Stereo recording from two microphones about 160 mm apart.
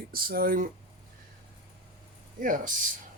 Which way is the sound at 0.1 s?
65° right (ahead or behind).